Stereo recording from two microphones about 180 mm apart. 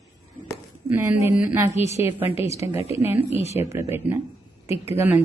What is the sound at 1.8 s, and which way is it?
Speech, 35° left (ahead or behind).